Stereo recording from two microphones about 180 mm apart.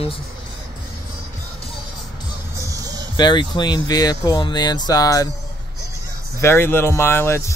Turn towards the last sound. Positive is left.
turn(degrees=15)  # may be behind; listen again after turning